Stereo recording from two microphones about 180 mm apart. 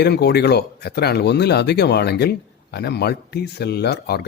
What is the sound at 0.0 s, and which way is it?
Speech, 65° left (ahead or behind).